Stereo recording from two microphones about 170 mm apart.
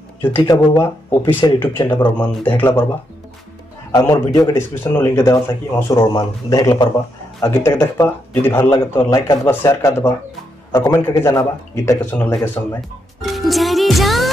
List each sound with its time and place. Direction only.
0.5 s speech: 20° left (ahead or behind)
4.0 s speech: 20° left (ahead or behind)
13.2 s music: centre (ahead or behind)